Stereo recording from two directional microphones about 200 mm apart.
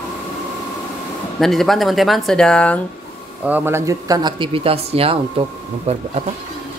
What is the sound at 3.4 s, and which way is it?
Speech, 10° right (ahead or behind).